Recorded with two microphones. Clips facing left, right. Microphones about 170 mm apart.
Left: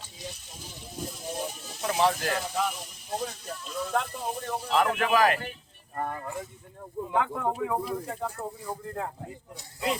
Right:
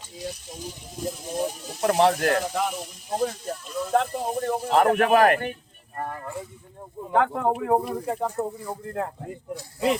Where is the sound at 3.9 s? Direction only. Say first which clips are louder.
Right 8 dB; 55° right (ahead or behind).